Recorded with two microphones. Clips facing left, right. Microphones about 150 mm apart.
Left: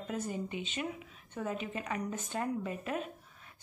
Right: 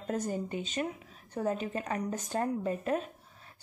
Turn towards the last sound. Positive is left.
turn(degrees=-35)  # may be behind; listen again after turning